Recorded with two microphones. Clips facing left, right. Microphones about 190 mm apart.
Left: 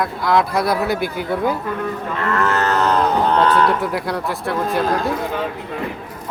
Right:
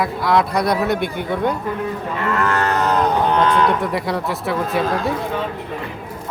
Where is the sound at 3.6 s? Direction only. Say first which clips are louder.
Even; centre (ahead or behind).